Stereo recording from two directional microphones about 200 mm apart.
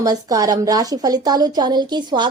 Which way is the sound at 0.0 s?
20° right (ahead or behind).